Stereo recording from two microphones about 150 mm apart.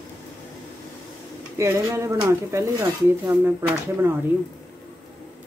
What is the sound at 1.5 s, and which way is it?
Speech, 20° right (ahead or behind).